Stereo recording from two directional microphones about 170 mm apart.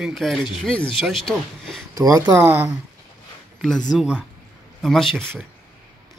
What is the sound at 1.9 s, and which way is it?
Speech, 20° right (ahead or behind).